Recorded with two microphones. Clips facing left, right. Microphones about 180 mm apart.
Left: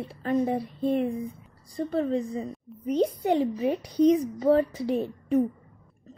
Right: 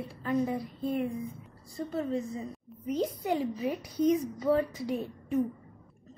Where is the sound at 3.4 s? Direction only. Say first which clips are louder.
Left 6 dB; 30° left (ahead or behind).